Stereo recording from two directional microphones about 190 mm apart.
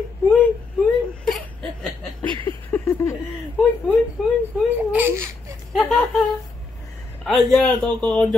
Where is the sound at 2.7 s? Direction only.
15° left (ahead or behind).